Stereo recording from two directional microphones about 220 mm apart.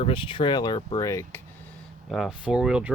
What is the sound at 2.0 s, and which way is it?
Speech, centre (ahead or behind).